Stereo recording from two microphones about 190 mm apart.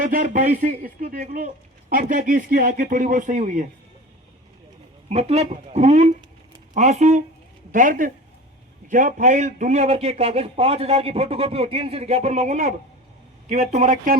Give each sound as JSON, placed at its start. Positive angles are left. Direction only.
{"t": 0.0, "sound": "speech", "side_deg": -40}
{"t": 5.0, "sound": "a man's voice", "side_deg": -35}